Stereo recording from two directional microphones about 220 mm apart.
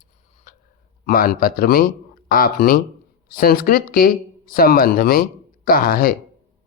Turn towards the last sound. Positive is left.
turn(degrees=40)  # may be behind; listen again after turning